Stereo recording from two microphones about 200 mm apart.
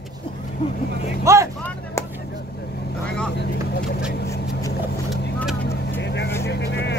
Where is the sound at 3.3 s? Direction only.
55° left (ahead or behind).